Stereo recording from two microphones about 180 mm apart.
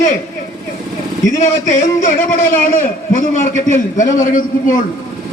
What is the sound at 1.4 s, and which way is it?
A man's voice, 45° left (ahead or behind).